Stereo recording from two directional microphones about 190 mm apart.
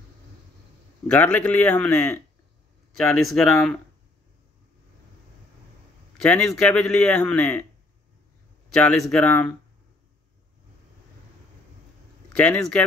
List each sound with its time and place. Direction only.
1.0 s a man's voice: 10° left (ahead or behind)
6.1 s a man's voice: 5° left (ahead or behind)
8.7 s a man's voice: 5° left (ahead or behind)
12.4 s a man's voice: 5° left (ahead or behind)